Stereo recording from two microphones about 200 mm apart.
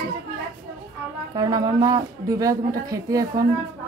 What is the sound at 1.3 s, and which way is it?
Speech, 20° right (ahead or behind).